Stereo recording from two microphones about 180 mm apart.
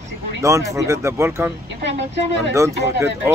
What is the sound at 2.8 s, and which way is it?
Speech, 15° right (ahead or behind).